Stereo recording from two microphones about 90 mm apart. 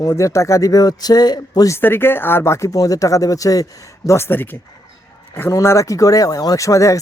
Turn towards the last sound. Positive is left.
turn(degrees=35)  # may be behind; listen again after turning